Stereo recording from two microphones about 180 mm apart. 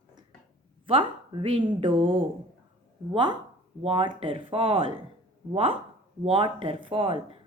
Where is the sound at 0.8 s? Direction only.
30° right (ahead or behind).